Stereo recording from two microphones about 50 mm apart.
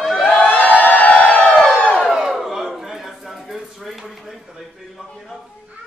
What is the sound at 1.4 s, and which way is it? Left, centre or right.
Crowd, centre.